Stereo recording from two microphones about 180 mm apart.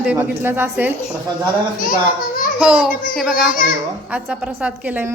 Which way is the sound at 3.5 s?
50° left (ahead or behind).